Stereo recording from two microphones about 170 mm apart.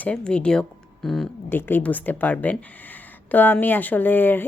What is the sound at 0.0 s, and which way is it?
Speech, 5° left (ahead or behind).